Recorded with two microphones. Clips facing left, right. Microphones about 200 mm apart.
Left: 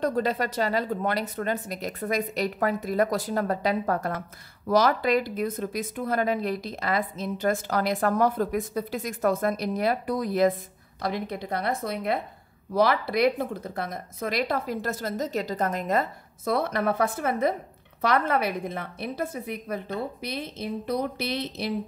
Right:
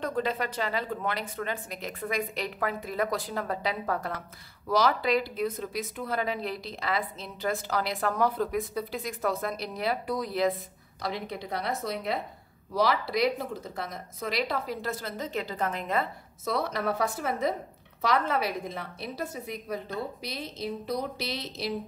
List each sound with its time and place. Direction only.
0.0 s a woman's voice: 40° left (ahead or behind); by 21.7 s 55° left (ahead or behind)